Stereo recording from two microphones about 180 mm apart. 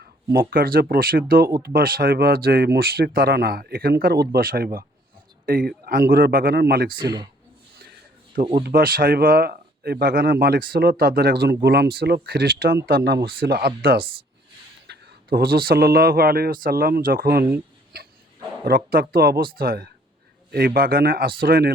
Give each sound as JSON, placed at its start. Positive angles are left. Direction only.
{"t": 0.3, "sound": "speech", "side_deg": -55}
{"t": 6.9, "sound": "speech", "side_deg": -25}
{"t": 8.5, "sound": "speech", "side_deg": -55}
{"t": 18.6, "sound": "speech", "side_deg": -55}